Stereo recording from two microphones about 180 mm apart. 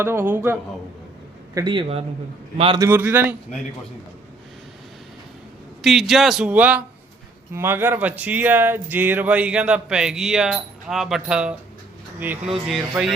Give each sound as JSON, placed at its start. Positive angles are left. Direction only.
{"t": 0.0, "sound": "speech", "side_deg": -10}
{"t": 1.5, "sound": "a man's voice", "side_deg": -25}
{"t": 2.7, "sound": "speech", "side_deg": -15}
{"t": 5.8, "sound": "a man's voice", "side_deg": 0}